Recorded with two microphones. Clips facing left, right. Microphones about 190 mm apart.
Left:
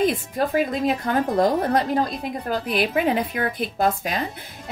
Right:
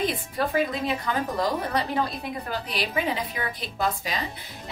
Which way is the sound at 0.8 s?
50° left (ahead or behind).